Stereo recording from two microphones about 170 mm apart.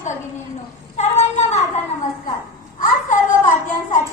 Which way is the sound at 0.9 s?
40° left (ahead or behind).